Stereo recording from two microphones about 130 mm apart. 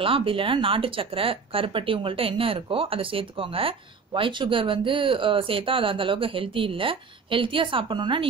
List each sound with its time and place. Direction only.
0.0 s speech: 45° right (ahead or behind)